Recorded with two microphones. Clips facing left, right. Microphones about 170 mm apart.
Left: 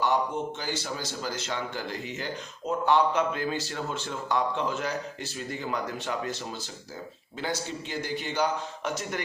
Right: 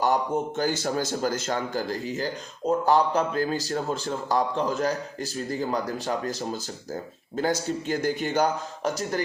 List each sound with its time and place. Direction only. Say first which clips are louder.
0.0 s speech: right 3 dB; 45° right (ahead or behind)